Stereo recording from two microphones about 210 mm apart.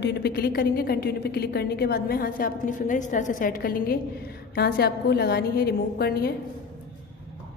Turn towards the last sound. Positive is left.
turn(degrees=50)  # may be behind; listen again after turning